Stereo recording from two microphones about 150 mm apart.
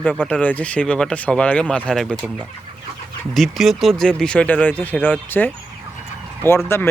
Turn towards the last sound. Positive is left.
turn(degrees=15)  # may be behind; listen again after turning